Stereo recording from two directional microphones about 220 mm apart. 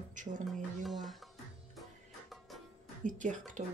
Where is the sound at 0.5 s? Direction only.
Centre (ahead or behind).